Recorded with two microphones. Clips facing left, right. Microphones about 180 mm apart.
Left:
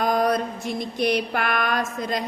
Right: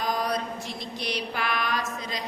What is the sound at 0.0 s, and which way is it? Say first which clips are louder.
Mantra: left 7 dB; 50° left (ahead or behind).